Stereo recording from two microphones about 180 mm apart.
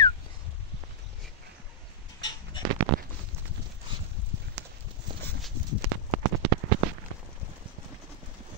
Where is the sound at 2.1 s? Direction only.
25° left (ahead or behind).